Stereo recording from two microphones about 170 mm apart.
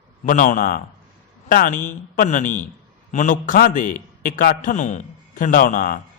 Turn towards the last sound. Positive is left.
turn(degrees=50)  # may be behind; listen again after turning